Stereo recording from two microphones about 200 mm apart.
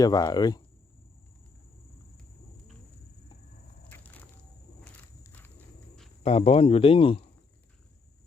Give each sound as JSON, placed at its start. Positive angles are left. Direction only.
{"t": 0.0, "sound": "speech", "side_deg": 20}
{"t": 3.8, "sound": "a sound", "side_deg": 10}
{"t": 4.8, "sound": "walk", "side_deg": 10}
{"t": 6.2, "sound": "speech", "side_deg": 30}